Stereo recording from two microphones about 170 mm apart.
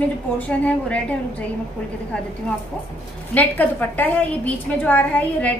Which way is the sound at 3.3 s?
10° left (ahead or behind).